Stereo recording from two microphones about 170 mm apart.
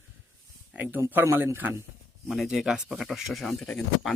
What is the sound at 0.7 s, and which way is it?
Speech, 10° right (ahead or behind).